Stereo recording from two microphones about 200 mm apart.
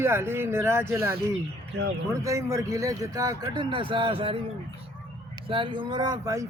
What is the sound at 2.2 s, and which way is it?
A man's voice, 15° right (ahead or behind).